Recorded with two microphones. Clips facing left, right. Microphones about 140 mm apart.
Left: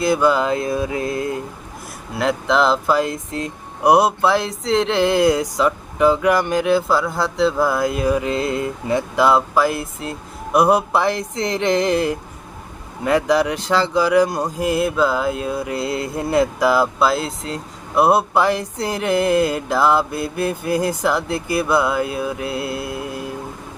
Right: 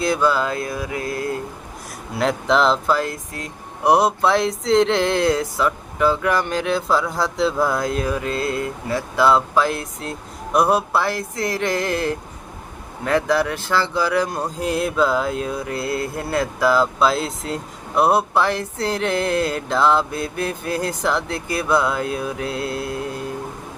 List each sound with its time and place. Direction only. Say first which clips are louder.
0.2 s mantra: left 3 dB; 20° left (ahead or behind)
2.1 s speech: left 1 dB; centre (ahead or behind)
2.8 s mantra: left 2 dB; 15° left (ahead or behind)
3.8 s speech: left 2 dB; 10° left (ahead or behind)
9.6 s speech: left 2 dB; 5° left (ahead or behind)
17.1 s speech: left 1 dB; centre (ahead or behind)
18.0 s speech: left 2 dB; 10° left (ahead or behind)